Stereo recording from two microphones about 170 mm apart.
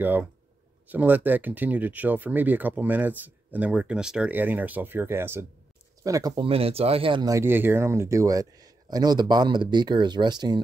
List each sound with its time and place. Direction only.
0.0 s speech: 10° right (ahead or behind)